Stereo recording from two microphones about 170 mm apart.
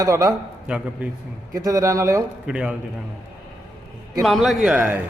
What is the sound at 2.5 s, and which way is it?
Speech, 5° right (ahead or behind).